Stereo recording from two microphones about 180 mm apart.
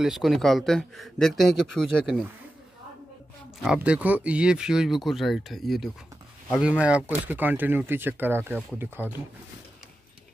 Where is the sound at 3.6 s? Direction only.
5° right (ahead or behind).